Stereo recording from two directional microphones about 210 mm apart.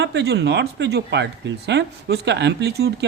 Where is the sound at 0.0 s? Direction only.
55° right (ahead or behind).